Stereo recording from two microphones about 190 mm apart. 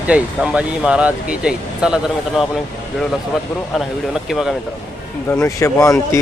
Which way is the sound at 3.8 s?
Centre (ahead or behind).